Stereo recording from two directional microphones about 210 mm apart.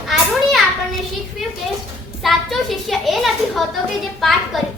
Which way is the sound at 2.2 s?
Centre (ahead or behind).